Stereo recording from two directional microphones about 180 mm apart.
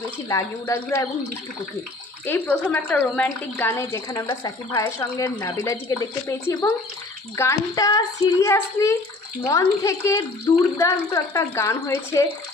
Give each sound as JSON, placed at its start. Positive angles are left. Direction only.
{"t": 0.3, "sound": "a woman's voice", "side_deg": 15}
{"t": 2.2, "sound": "a woman's voice", "side_deg": 10}